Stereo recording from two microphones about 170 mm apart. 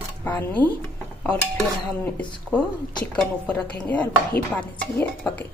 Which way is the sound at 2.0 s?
5° left (ahead or behind).